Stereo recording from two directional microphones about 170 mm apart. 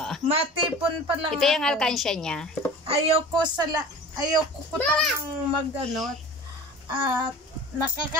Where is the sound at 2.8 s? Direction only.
25° right (ahead or behind).